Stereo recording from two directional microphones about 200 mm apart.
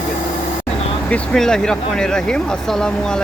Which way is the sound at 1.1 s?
5° left (ahead or behind).